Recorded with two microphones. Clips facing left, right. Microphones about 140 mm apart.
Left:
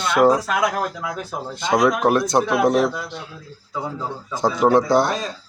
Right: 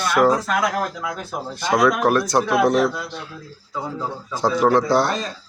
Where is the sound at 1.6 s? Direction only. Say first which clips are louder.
Even; 20° left (ahead or behind).